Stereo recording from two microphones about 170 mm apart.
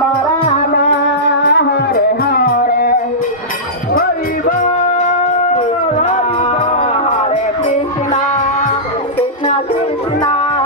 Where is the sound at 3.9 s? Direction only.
55° left (ahead or behind); by 9.6 s 40° left (ahead or behind).